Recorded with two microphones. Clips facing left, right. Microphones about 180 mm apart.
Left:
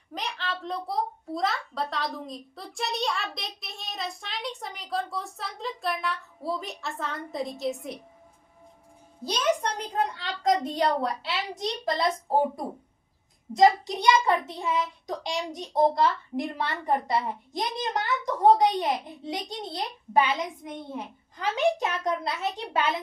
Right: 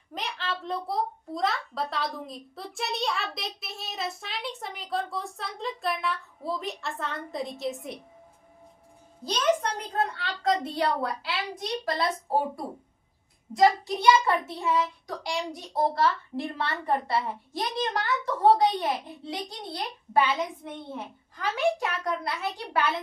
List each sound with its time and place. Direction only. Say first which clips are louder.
0.1 s a child's voice: even; centre (ahead or behind)
10.0 s a child's voice: left 1 dB; 15° left (ahead or behind)